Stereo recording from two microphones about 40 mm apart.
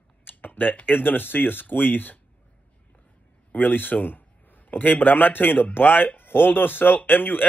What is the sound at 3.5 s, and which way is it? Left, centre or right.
A man's voice, left.